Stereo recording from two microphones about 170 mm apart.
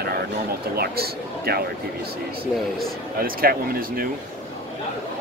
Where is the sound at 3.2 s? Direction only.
60° right (ahead or behind).